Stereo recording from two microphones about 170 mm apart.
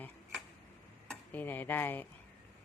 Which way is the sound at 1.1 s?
10° left (ahead or behind).